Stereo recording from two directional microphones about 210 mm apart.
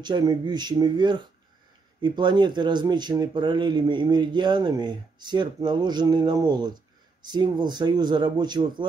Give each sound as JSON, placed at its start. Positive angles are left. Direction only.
{"t": 0.0, "sound": "speech", "side_deg": -20}